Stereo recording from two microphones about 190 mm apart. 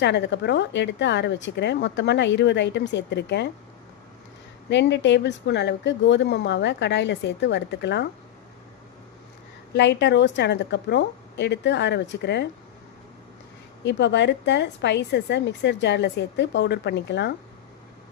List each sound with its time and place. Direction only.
0.0 s a woman's voice: 65° left (ahead or behind)
4.7 s a woman's voice: 70° left (ahead or behind)
9.7 s a woman's voice: 65° left (ahead or behind)
13.8 s a woman's voice: 70° left (ahead or behind)